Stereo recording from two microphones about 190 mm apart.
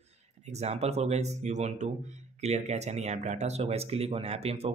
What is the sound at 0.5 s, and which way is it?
Speech, 35° right (ahead or behind).